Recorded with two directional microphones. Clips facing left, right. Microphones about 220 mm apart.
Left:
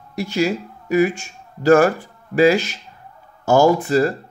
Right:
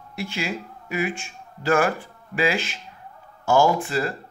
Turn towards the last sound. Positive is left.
turn(degrees=40)  # may be behind; listen again after turning